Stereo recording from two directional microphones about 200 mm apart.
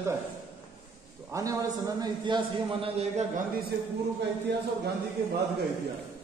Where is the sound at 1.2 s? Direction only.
15° right (ahead or behind); by 3.4 s 30° right (ahead or behind).